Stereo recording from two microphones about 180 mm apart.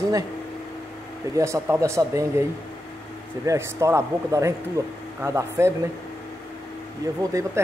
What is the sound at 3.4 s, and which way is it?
Speech, 15° right (ahead or behind).